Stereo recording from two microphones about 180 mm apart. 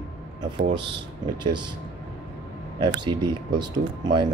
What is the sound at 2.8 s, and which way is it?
Speech, 25° right (ahead or behind).